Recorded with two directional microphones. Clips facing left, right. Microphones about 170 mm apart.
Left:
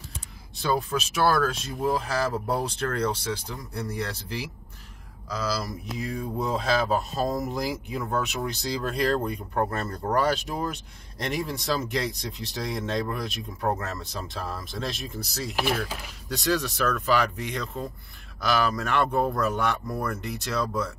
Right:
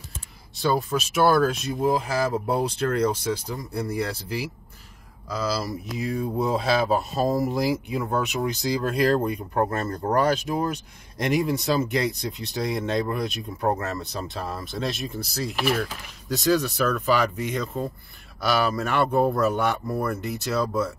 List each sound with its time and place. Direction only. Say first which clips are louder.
0.6 s speech: right 3 dB; 5° right (ahead or behind)